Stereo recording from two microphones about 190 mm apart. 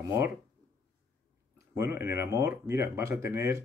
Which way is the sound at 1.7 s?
15° right (ahead or behind).